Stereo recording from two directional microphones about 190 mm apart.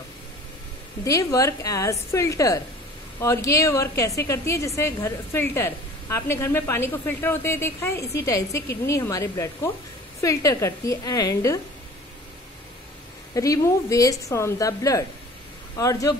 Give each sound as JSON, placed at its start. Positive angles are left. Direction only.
{"t": 1.0, "sound": "a woman's voice", "side_deg": 15}
{"t": 13.3, "sound": "a woman's voice", "side_deg": 15}